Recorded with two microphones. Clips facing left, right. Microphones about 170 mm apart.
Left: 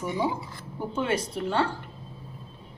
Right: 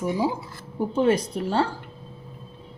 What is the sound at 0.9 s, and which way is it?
Speech, 35° right (ahead or behind).